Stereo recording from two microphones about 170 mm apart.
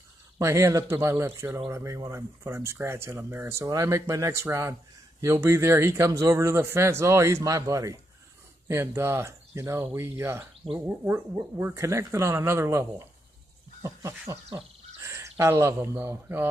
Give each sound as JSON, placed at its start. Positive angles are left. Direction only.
{"t": 0.4, "sound": "speech", "side_deg": -15}